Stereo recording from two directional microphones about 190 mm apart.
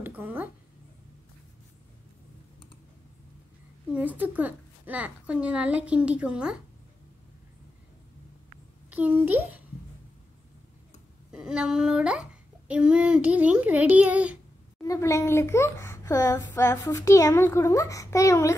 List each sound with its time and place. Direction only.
0.0 s speech: 10° right (ahead or behind)
3.9 s a woman's voice: 10° right (ahead or behind)
8.9 s a woman's voice: 10° right (ahead or behind)
11.3 s a child's voice: 5° right (ahead or behind)
14.8 s a child's voice: 15° left (ahead or behind)